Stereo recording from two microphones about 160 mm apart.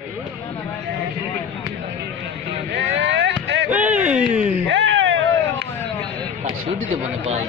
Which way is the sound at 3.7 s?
10° right (ahead or behind).